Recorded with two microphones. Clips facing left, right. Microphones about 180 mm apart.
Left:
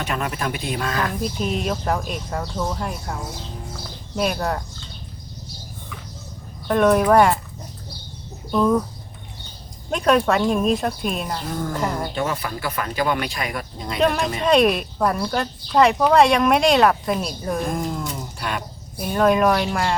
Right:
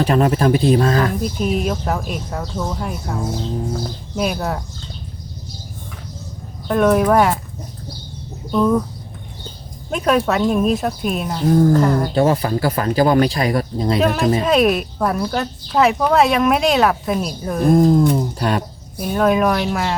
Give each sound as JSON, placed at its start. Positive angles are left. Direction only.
{"t": 0.0, "sound": "speech", "side_deg": -35}
{"t": 1.2, "sound": "speech", "side_deg": -5}
{"t": 6.7, "sound": "speech", "side_deg": 0}
{"t": 8.5, "sound": "speech", "side_deg": 0}
{"t": 9.9, "sound": "speech", "side_deg": -5}
{"t": 11.4, "sound": "speech", "side_deg": -40}
{"t": 14.0, "sound": "speech", "side_deg": -5}
{"t": 17.7, "sound": "speech", "side_deg": -35}
{"t": 18.9, "sound": "speech", "side_deg": 0}